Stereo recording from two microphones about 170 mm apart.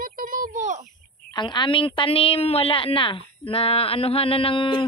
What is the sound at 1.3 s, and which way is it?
A woman's voice, 25° left (ahead or behind).